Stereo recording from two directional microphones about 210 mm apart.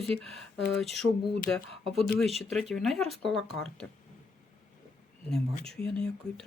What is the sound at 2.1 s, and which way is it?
Speech, centre (ahead or behind).